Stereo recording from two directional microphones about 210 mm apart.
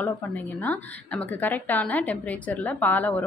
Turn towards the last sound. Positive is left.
turn(degrees=10)  # may be behind; listen again after turning